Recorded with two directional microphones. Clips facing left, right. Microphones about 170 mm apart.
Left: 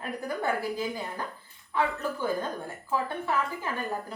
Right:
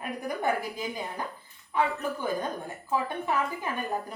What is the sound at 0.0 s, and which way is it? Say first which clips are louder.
A woman's voice: right 1 dB; 15° right (ahead or behind).